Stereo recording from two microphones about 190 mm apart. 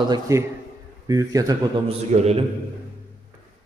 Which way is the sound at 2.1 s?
35° right (ahead or behind).